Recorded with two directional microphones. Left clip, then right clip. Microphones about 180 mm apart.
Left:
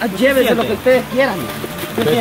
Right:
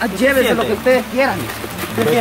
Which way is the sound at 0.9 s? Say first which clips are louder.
Left 1 dB; 5° right (ahead or behind).